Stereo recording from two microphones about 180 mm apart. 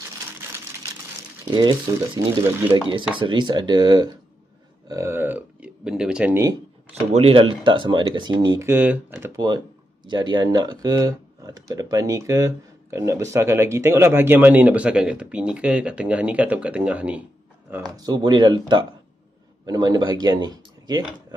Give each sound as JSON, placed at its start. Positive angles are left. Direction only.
{"t": 1.5, "sound": "speech", "side_deg": -20}
{"t": 2.7, "sound": "speech", "side_deg": -25}
{"t": 4.8, "sound": "a sound", "side_deg": -15}
{"t": 7.1, "sound": "speech", "side_deg": -35}
{"t": 17.9, "sound": "speech", "side_deg": -20}